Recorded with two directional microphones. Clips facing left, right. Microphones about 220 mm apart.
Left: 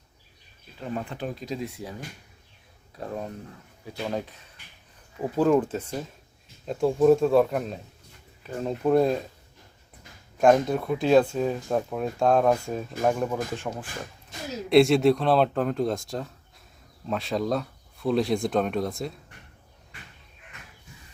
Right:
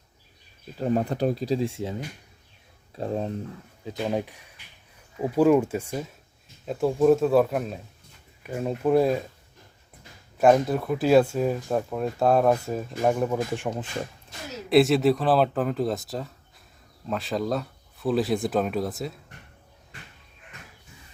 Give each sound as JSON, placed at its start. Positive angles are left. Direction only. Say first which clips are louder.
{"t": 0.8, "sound": "speech", "louder": "right 8 dB", "side_deg": -40}
{"t": 3.0, "sound": "speech", "louder": "right 5 dB", "side_deg": -25}
{"t": 10.3, "sound": "speech", "louder": "even", "side_deg": -5}
{"t": 14.7, "sound": "speech", "louder": "left 1 dB", "side_deg": 0}